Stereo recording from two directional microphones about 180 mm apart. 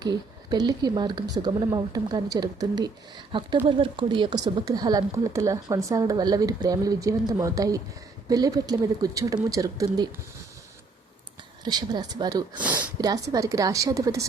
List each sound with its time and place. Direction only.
0.0 s speech: 25° right (ahead or behind)
11.6 s speech: 25° right (ahead or behind)
12.5 s speech: 10° right (ahead or behind)
13.0 s speech: 20° right (ahead or behind)